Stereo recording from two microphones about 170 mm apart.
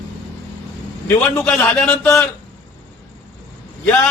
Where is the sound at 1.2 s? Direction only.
10° left (ahead or behind).